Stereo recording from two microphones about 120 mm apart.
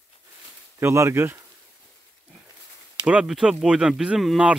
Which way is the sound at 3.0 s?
5° right (ahead or behind).